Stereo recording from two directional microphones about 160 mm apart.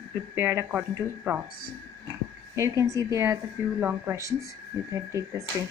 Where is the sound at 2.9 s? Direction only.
20° right (ahead or behind).